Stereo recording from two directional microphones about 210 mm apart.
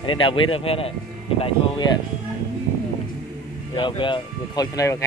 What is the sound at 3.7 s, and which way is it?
Speech, 20° left (ahead or behind).